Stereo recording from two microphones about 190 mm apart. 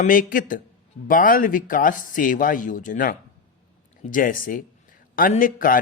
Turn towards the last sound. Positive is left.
turn(degrees=45)  # may be behind; listen again after turning